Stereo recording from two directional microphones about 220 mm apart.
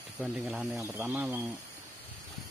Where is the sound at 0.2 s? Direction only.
5° right (ahead or behind).